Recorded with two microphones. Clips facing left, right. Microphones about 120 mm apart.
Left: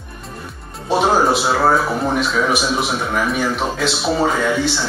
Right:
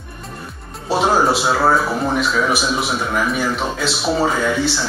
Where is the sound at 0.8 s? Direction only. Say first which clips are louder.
Left 1 dB; centre (ahead or behind).